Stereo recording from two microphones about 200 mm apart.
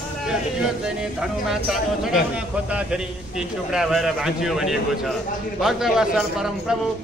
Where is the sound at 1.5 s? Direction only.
Centre (ahead or behind).